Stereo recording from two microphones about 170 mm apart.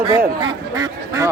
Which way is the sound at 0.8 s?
20° right (ahead or behind).